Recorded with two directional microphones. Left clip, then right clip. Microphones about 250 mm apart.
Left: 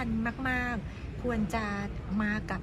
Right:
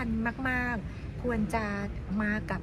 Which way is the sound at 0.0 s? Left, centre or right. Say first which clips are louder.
Right 1 dB; centre.